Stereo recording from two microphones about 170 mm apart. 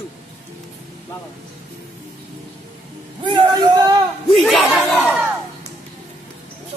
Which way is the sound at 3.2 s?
25° right (ahead or behind).